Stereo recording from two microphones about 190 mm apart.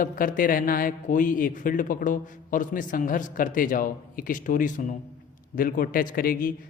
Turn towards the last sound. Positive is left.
turn(degrees=50)  # may be behind; listen again after turning